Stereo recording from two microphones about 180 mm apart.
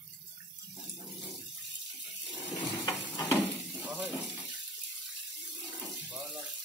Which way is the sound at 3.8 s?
5° right (ahead or behind).